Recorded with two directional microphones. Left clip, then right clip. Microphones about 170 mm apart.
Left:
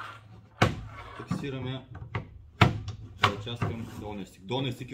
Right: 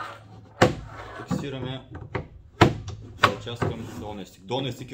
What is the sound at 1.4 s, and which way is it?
Speech, 20° left (ahead or behind).